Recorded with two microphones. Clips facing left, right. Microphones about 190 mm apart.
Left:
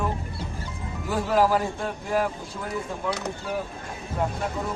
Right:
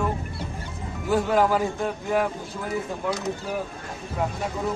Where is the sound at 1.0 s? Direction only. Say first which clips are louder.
Right 1 dB; centre (ahead or behind).